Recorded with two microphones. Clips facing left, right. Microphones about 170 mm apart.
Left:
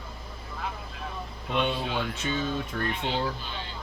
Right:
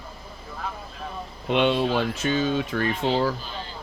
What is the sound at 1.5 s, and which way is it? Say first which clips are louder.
Speech: right 7 dB; 90° right.